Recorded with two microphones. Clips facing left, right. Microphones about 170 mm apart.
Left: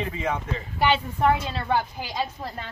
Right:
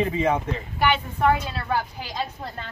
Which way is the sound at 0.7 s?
30° left (ahead or behind).